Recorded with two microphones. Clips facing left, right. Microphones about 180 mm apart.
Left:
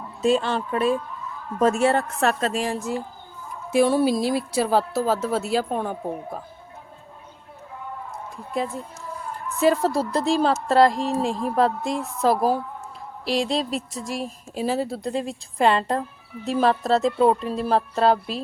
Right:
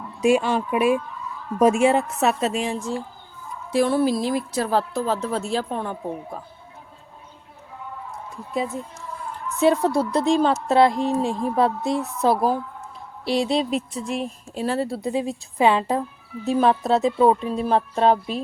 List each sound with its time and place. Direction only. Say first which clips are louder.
0.2 s speech: right 2 dB; 10° right (ahead or behind)
3.7 s a woman's voice: left 1 dB; 15° left (ahead or behind)
9.6 s speech: right 1 dB; centre (ahead or behind)